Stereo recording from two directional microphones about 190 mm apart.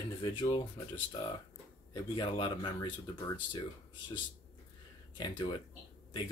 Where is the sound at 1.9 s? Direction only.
25° left (ahead or behind).